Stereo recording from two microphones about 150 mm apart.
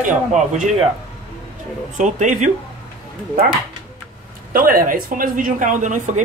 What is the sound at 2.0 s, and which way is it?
Speech, 55° right (ahead or behind).